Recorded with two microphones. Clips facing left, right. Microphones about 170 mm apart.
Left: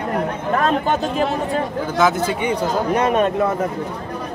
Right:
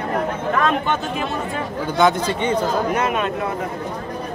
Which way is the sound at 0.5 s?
40° left (ahead or behind).